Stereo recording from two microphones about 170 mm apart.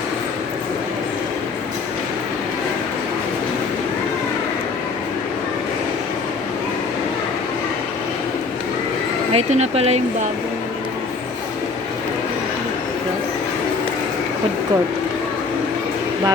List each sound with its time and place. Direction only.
9.3 s speech: 40° right (ahead or behind)